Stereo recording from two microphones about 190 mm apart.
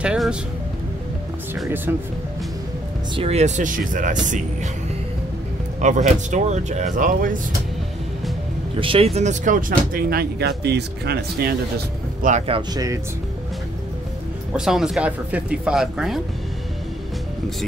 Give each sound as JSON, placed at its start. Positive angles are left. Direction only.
{"t": 0.0, "sound": "music", "side_deg": -5}
{"t": 1.9, "sound": "speech", "side_deg": -10}
{"t": 3.2, "sound": "speech", "side_deg": -35}
{"t": 5.8, "sound": "speech", "side_deg": -40}
{"t": 8.7, "sound": "speech", "side_deg": -30}
{"t": 12.2, "sound": "speech", "side_deg": -40}
{"t": 14.5, "sound": "speech", "side_deg": 0}